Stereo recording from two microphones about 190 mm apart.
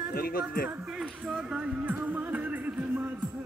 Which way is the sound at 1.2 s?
5° right (ahead or behind).